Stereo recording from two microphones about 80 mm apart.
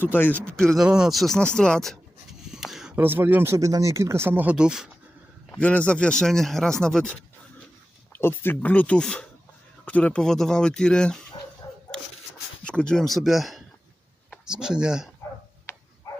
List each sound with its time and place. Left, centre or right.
0.0 s speech: left
0.4 s speech: centre
0.8 s speech: centre
1.2 s speech: centre
2.5 s a sound: centre
2.9 s speech: right
3.6 s speech: right
4.5 s speech: centre
5.5 s speech: centre
8.1 s speech: left; by 11.3 s centre
11.6 s a sound: left
12.6 s speech: centre
16.1 s dog: left